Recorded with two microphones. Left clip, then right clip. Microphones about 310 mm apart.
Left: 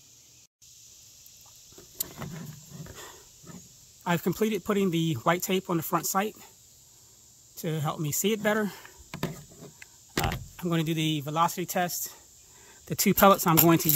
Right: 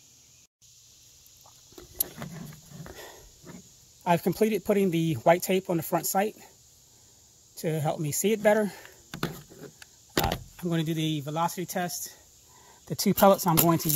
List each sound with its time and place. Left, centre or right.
4.0 s speech: centre
7.5 s speech: centre
9.8 s a sound: centre
10.5 s speech: centre